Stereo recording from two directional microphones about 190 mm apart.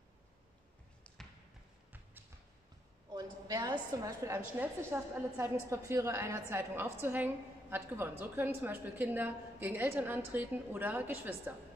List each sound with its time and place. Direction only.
1.1 s basketball bounce: 5° left (ahead or behind)
3.1 s a sound: 20° right (ahead or behind)
3.7 s a woman's voice: 15° right (ahead or behind)